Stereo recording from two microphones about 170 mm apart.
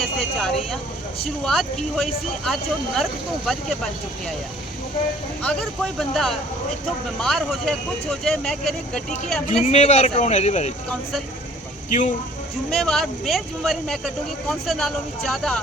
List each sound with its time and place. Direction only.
0.0 s speech: centre (ahead or behind)
2.0 s speech: 5° left (ahead or behind)
5.4 s speech: 5° left (ahead or behind)
9.5 s a man's voice: 40° left (ahead or behind)
11.9 s speech: 45° left (ahead or behind)
12.7 s speech: centre (ahead or behind)